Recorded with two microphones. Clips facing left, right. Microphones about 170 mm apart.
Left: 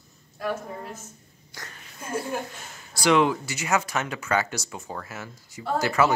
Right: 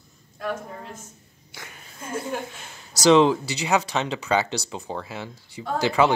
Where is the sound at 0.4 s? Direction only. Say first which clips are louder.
Even; 5° left (ahead or behind).